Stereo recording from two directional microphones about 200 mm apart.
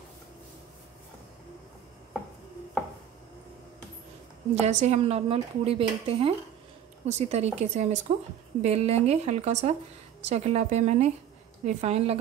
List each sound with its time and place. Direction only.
4.6 s speech: 35° right (ahead or behind)